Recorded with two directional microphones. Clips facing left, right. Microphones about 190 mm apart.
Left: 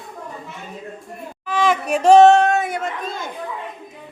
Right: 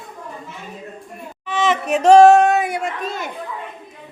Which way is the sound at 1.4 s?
5° left (ahead or behind).